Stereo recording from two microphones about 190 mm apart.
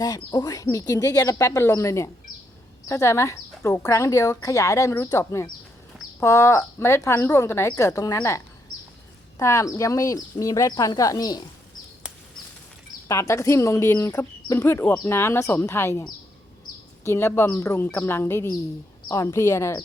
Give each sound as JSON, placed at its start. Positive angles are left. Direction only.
{"t": 0.0, "sound": "speech", "side_deg": 20}
{"t": 9.4, "sound": "speech", "side_deg": 15}
{"t": 13.1, "sound": "speech", "side_deg": 15}